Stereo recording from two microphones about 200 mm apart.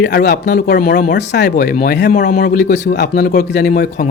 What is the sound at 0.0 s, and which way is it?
Speech, 55° left (ahead or behind).